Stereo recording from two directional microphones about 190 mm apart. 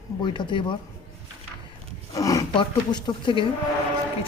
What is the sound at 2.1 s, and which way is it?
Speech, 20° left (ahead or behind).